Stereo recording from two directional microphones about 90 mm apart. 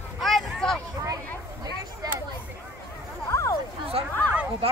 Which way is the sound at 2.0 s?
45° right (ahead or behind).